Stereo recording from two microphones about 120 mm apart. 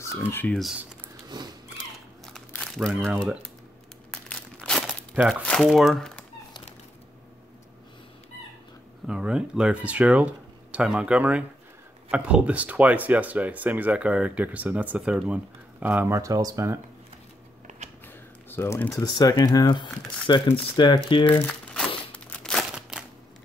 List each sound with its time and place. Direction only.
0.3 s speech: 15° left (ahead or behind)
1.1 s a sound: 35° right (ahead or behind)
2.5 s crumpling: 5° left (ahead or behind)
4.1 s crumpling: 5° left (ahead or behind)
5.3 s speech: 10° left (ahead or behind)
9.0 s speech: 5° right (ahead or behind)
16.2 s speech: 30° right (ahead or behind)
18.0 s speech: 20° left (ahead or behind); by 21.4 s 45° left (ahead or behind)
21.5 s crumpling: 10° left (ahead or behind)